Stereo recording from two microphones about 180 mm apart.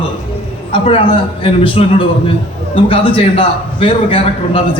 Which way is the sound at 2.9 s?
30° left (ahead or behind).